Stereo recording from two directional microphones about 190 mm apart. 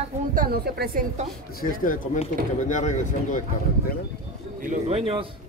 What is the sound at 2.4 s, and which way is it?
Speech, 55° right (ahead or behind).